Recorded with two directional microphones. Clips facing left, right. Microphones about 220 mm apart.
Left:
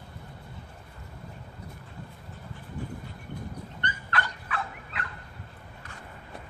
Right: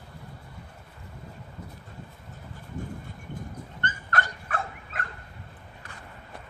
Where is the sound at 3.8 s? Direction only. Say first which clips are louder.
Right 2 dB; 45° right (ahead or behind).